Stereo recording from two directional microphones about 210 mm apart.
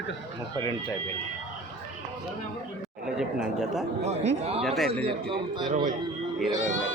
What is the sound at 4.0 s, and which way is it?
Speech, 30° right (ahead or behind).